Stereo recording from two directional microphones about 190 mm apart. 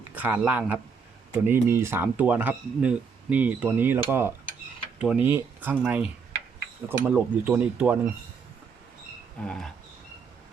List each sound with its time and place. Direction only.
0.1 s speech: 10° right (ahead or behind)
9.4 s speech: 5° left (ahead or behind)